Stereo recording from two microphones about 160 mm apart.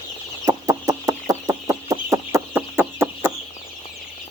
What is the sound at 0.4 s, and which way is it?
Chicken, 20° right (ahead or behind).